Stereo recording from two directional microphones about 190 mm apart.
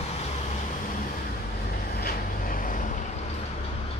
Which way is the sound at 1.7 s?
50° left (ahead or behind).